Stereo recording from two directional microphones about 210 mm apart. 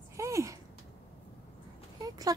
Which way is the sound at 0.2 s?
15° right (ahead or behind).